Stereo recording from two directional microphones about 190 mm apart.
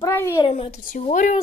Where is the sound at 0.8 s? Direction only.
40° left (ahead or behind).